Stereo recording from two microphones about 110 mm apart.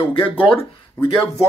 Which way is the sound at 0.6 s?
20° left (ahead or behind).